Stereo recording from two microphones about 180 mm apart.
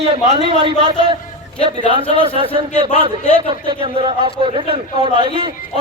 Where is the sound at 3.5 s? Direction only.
30° right (ahead or behind).